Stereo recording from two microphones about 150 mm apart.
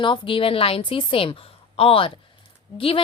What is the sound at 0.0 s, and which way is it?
Speech, 35° left (ahead or behind).